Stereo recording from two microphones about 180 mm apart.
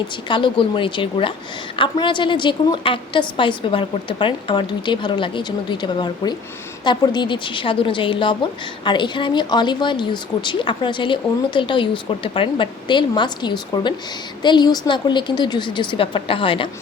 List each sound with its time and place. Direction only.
0.3 s speech: 25° left (ahead or behind)